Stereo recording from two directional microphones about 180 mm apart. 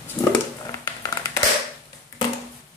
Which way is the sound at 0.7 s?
20° left (ahead or behind).